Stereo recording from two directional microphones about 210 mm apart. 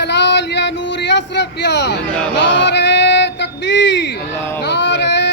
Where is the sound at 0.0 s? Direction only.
55° left (ahead or behind).